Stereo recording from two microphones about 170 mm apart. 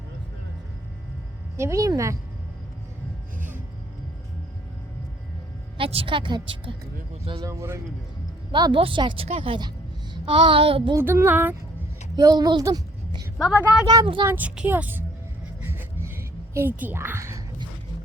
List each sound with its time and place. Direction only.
1.5 s a woman's voice: 15° right (ahead or behind)
5.7 s speech: 35° right (ahead or behind)
7.3 s a sound: 30° right (ahead or behind)
7.5 s a woman's voice: 15° right (ahead or behind)
8.5 s speech: 25° right (ahead or behind)
10.2 s a sound: 30° right (ahead or behind)
10.9 s a woman's voice: 15° right (ahead or behind)
12.1 s a woman's voice: 25° right (ahead or behind)
13.5 s a woman's voice: 5° right (ahead or behind)
13.8 s speech: 25° right (ahead or behind)
14.3 s a woman's voice: 10° right (ahead or behind)
15.6 s a sound: 15° right (ahead or behind)